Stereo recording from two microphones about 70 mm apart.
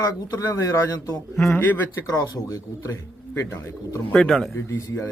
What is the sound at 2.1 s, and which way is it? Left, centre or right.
Speech, left.